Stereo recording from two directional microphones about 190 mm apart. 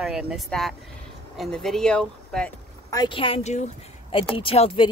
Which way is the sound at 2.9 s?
25° left (ahead or behind).